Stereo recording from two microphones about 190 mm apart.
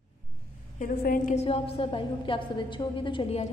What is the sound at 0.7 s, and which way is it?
A woman's voice, 45° left (ahead or behind).